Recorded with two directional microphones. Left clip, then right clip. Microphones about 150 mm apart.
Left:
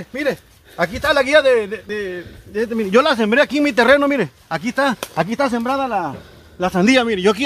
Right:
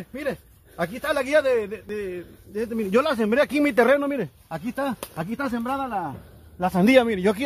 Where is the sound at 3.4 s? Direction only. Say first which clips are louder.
Left 4 dB; 35° right (ahead or behind).